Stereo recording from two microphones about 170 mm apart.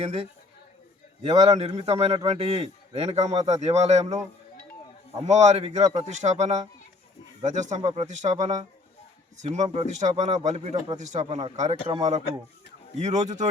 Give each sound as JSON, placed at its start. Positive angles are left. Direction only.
{"t": 0.0, "sound": "a man's voice", "side_deg": -35}
{"t": 5.2, "sound": "a man's voice", "side_deg": -40}